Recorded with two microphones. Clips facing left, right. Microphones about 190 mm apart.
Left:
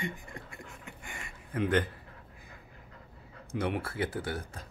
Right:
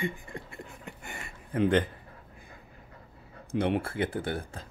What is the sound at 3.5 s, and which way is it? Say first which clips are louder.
Speech: right 4 dB; 25° right (ahead or behind).